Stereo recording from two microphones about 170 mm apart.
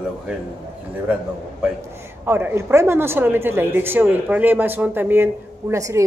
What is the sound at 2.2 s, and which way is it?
Speech, 10° right (ahead or behind).